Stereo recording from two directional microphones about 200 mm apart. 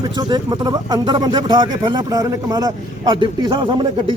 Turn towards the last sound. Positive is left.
turn(degrees=-25)  # may be behind; listen again after turning